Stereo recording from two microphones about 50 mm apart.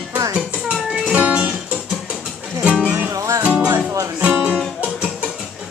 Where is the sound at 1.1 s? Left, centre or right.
Right.